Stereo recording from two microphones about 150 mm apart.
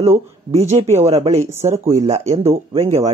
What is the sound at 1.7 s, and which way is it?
Speech, 45° right (ahead or behind).